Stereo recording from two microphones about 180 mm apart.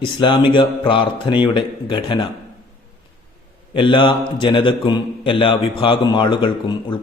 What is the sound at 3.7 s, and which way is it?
A man's voice, 25° left (ahead or behind).